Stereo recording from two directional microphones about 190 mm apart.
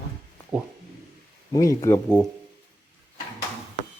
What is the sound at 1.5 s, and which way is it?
Speech, 15° left (ahead or behind).